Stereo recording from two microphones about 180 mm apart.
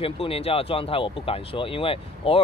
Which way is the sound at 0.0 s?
30° left (ahead or behind).